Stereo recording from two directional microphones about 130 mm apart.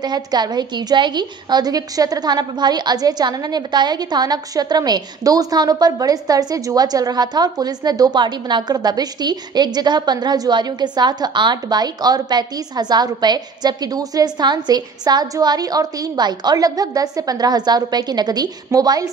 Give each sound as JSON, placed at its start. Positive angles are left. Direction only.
{"t": 0.0, "sound": "a woman's voice", "side_deg": -35}